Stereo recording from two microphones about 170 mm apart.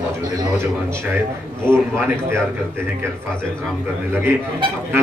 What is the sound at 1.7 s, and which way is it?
Speech, 15° right (ahead or behind).